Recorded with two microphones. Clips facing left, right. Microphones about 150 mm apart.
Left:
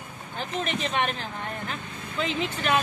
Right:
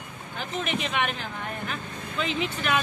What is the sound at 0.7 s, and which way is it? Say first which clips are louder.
Speech: even; 30° left (ahead or behind).